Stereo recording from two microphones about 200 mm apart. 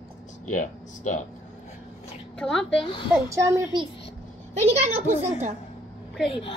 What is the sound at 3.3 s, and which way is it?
Speech, 15° right (ahead or behind).